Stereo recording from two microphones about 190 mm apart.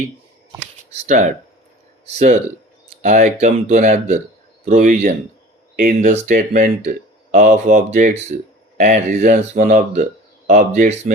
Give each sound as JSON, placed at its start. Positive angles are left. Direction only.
{"t": 0.9, "sound": "speech", "side_deg": -40}